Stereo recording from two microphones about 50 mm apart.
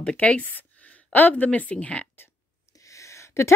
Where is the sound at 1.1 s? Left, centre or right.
Left.